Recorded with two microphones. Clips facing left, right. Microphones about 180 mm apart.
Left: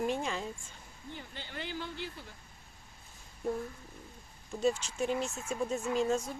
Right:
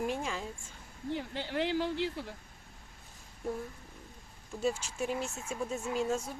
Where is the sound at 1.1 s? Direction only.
80° right.